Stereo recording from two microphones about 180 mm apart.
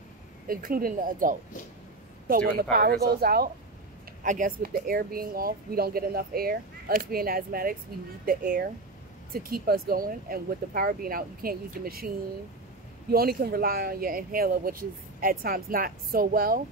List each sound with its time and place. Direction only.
0.5 s speech: 50° right (ahead or behind)
4.2 s speech: 45° right (ahead or behind)
13.1 s speech: 60° right (ahead or behind)